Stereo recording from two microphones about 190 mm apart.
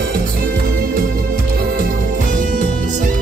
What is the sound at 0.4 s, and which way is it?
Music, 50° right (ahead or behind).